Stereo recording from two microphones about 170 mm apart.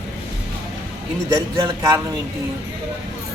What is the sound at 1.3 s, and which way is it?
Speech, 25° right (ahead or behind).